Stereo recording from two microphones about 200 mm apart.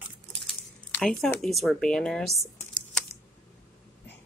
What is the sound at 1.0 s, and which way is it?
Speech, centre (ahead or behind).